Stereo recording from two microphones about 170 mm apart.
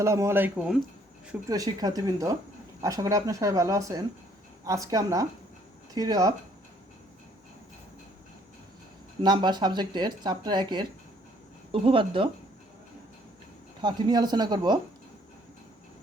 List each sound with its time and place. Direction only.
0.0 s speech: 15° right (ahead or behind)
1.5 s speech: 20° right (ahead or behind)
9.2 s speech: 25° right (ahead or behind)
13.8 s speech: 25° right (ahead or behind)